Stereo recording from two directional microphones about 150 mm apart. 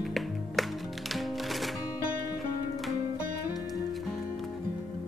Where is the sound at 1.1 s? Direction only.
Centre (ahead or behind).